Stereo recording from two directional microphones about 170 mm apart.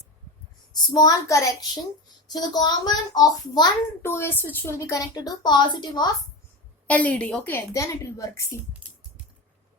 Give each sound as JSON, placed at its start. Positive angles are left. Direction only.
{"t": 0.9, "sound": "speech", "side_deg": 20}
{"t": 6.8, "sound": "a woman's voice", "side_deg": 10}